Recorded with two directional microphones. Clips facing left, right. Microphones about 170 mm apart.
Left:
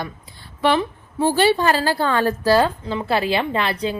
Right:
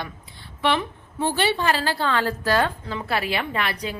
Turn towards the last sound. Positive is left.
turn(degrees=30)  # may be behind; listen again after turning